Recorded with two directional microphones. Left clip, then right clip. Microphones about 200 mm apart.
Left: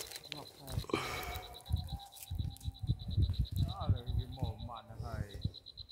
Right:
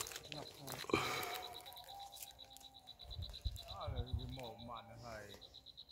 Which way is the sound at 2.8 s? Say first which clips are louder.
Left 9 dB; 20° left (ahead or behind).